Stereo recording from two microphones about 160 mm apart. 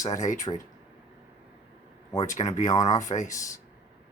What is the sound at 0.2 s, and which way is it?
Speech, 50° left (ahead or behind).